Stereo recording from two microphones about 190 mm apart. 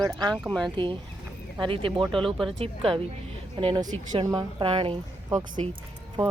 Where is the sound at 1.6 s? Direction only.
25° right (ahead or behind).